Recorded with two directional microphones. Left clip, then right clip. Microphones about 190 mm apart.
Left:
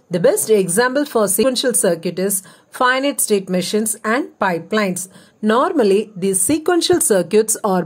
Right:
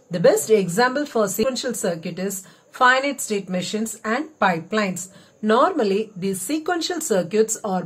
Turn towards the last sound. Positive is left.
turn(degrees=50)  # may be behind; listen again after turning